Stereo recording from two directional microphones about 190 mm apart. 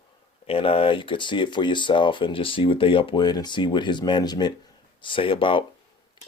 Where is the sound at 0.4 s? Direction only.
30° left (ahead or behind).